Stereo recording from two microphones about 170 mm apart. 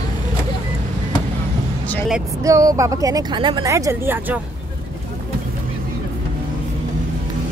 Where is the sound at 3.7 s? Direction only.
15° right (ahead or behind).